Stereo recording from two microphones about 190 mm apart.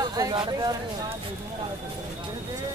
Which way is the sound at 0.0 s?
20° right (ahead or behind).